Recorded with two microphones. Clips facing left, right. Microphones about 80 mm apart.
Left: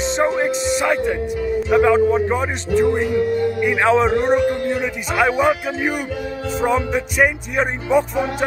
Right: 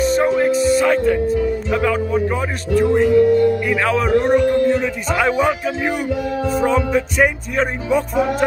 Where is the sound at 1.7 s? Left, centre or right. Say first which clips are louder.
Left 8 dB; left.